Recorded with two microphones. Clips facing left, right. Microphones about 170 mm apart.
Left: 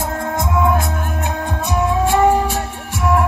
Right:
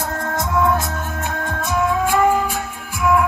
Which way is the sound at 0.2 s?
15° left (ahead or behind).